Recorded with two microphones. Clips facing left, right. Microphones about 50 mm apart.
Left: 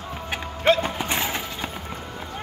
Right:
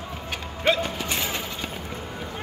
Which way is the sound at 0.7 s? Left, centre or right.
Left.